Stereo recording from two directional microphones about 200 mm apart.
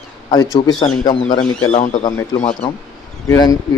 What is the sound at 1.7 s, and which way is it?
Speech, 35° left (ahead or behind).